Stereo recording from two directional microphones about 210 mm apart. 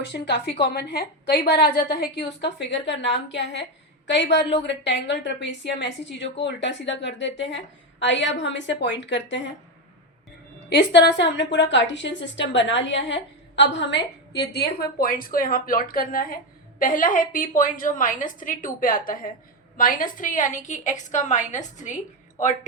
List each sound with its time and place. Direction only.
0.0 s a woman's voice: 55° left (ahead or behind)
10.7 s a woman's voice: 55° left (ahead or behind); by 22.5 s 35° left (ahead or behind)